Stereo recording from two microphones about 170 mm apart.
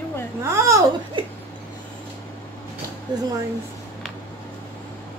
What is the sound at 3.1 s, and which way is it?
Speech, 25° right (ahead or behind).